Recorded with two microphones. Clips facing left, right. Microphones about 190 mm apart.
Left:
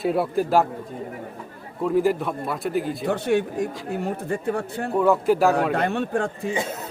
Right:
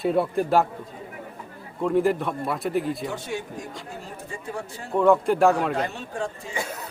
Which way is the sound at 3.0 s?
60° left (ahead or behind).